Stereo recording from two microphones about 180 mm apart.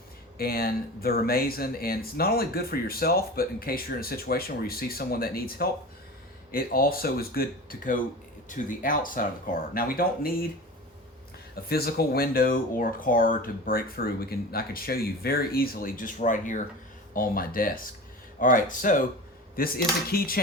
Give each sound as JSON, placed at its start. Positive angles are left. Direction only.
{"t": 0.3, "sound": "speech", "side_deg": 60}
{"t": 11.5, "sound": "speech", "side_deg": 60}